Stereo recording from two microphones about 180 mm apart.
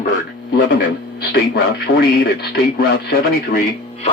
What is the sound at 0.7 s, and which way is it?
Speech, 60° left (ahead or behind).